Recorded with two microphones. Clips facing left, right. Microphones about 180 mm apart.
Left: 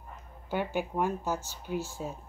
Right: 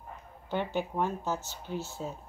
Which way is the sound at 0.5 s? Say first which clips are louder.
Even; 10° left (ahead or behind).